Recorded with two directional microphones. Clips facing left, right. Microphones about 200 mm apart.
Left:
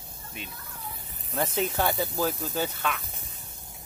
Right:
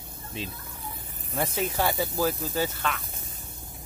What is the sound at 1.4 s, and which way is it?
Speech, 10° right (ahead or behind).